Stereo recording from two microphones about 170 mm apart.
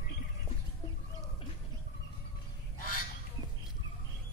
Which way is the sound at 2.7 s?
55° left (ahead or behind).